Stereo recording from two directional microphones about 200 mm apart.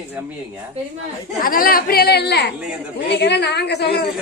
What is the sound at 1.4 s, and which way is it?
A woman's voice, 45° left (ahead or behind).